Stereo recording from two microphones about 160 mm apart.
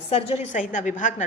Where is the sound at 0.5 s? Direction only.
55° left (ahead or behind).